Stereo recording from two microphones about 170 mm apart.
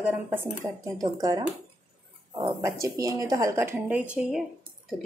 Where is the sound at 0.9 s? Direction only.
20° right (ahead or behind).